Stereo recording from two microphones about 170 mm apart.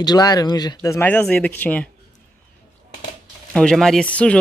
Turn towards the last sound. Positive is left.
turn(degrees=5)  # may be behind; listen again after turning